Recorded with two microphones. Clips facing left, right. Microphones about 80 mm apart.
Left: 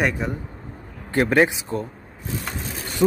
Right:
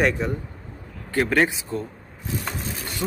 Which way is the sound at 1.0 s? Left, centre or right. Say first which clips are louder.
Left 3 dB; left.